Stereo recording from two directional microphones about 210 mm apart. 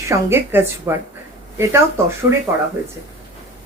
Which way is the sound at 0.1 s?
10° right (ahead or behind).